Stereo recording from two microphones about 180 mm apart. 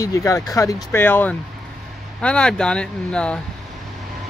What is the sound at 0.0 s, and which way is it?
Speech, 20° left (ahead or behind).